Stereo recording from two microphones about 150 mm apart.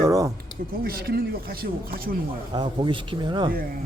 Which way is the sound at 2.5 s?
30° right (ahead or behind).